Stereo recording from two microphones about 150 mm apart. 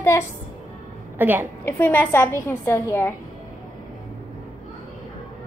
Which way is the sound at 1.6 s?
15° left (ahead or behind).